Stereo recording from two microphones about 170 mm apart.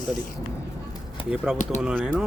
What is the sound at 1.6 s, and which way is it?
Speech, 45° left (ahead or behind).